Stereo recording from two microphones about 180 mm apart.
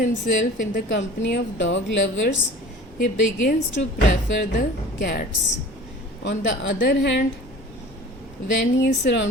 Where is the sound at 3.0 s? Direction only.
50° left (ahead or behind).